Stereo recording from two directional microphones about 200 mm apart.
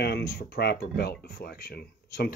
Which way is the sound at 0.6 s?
55° left (ahead or behind).